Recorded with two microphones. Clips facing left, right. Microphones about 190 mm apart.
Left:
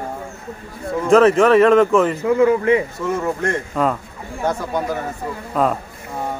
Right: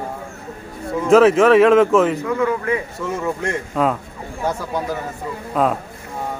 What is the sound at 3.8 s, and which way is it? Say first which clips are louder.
Speech: right 1 dB; centre (ahead or behind).